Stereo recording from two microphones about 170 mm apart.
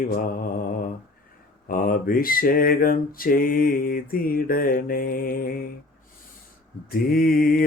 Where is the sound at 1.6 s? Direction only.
55° left (ahead or behind).